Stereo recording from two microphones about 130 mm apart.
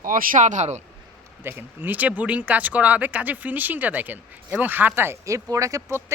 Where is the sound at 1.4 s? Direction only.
15° right (ahead or behind).